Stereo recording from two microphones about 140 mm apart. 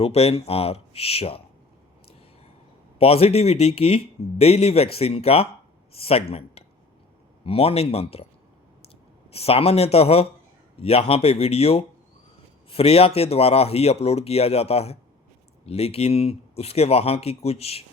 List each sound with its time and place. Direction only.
0.0 s speech: 45° left (ahead or behind)
3.0 s speech: 45° left (ahead or behind)
9.3 s speech: 45° left (ahead or behind)